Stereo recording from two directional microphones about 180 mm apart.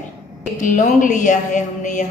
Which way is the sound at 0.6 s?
45° left (ahead or behind).